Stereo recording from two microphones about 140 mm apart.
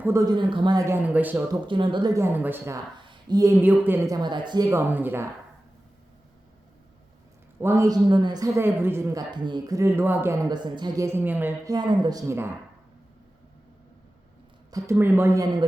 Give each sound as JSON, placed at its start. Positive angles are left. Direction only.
{"t": 0.0, "sound": "speech", "side_deg": -20}
{"t": 0.3, "sound": "a woman's voice", "side_deg": -35}
{"t": 0.9, "sound": "speech", "side_deg": -10}
{"t": 1.6, "sound": "speech", "side_deg": -35}
{"t": 2.1, "sound": "speech", "side_deg": -15}
{"t": 3.0, "sound": "a woman's voice", "side_deg": -35}
{"t": 7.6, "sound": "a woman's voice", "side_deg": -20}
{"t": 8.1, "sound": "a woman's voice", "side_deg": -30}
{"t": 11.6, "sound": "a woman's voice", "side_deg": -30}
{"t": 14.7, "sound": "a woman's voice", "side_deg": -20}